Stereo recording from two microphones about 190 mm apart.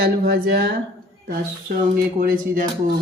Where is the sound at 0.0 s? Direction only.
55° right (ahead or behind).